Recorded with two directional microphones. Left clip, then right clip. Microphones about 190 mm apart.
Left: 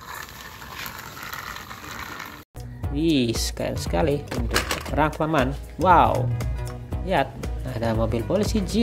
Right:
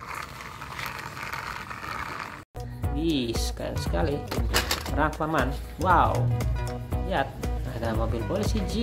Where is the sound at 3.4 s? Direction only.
25° left (ahead or behind).